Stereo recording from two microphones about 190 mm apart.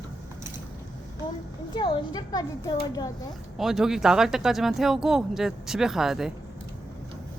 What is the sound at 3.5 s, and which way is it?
Speech, centre (ahead or behind).